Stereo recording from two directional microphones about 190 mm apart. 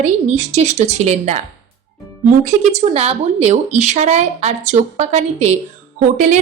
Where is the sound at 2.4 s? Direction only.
35° right (ahead or behind).